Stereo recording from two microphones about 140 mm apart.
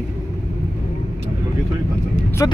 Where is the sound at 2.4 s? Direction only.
25° left (ahead or behind).